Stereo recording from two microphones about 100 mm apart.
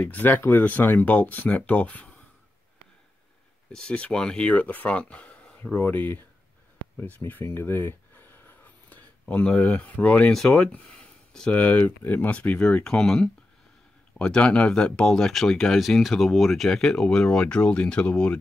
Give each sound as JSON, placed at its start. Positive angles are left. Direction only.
{"t": 0.0, "sound": "speech", "side_deg": 15}
{"t": 3.7, "sound": "speech", "side_deg": 10}
{"t": 7.0, "sound": "a sound", "side_deg": 20}
{"t": 9.2, "sound": "speech", "side_deg": 10}